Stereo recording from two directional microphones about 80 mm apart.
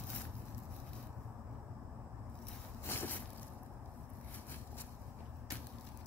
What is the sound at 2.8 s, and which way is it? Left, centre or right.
Vehicle, left.